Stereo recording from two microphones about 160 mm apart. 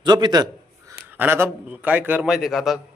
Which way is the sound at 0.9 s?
10° right (ahead or behind).